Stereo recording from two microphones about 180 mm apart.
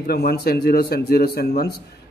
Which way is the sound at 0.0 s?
60° left (ahead or behind).